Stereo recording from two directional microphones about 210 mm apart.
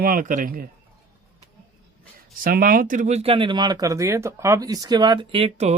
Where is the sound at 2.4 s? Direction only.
45° right (ahead or behind).